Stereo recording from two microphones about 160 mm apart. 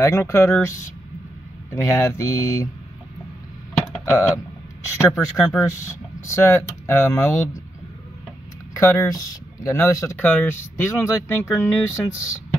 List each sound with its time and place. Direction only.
0.0 s speech: 15° left (ahead or behind)
4.8 s speech: 15° left (ahead or behind)
8.7 s speech: 15° left (ahead or behind)